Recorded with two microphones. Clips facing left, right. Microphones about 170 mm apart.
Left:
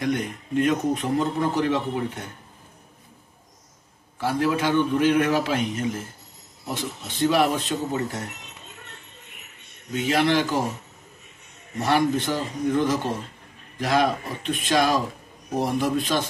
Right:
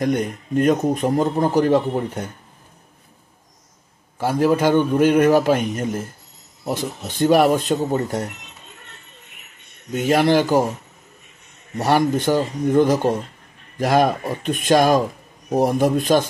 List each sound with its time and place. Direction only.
0.0 s a man's voice: 40° right (ahead or behind)
4.2 s a man's voice: 45° right (ahead or behind)
9.9 s a man's voice: 45° right (ahead or behind)
11.8 s a man's voice: 45° right (ahead or behind)